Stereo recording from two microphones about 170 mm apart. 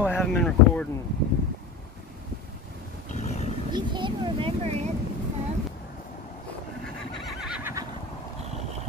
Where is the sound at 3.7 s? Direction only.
30° right (ahead or behind).